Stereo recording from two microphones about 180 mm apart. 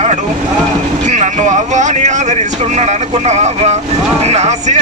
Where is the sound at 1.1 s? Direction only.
40° right (ahead or behind).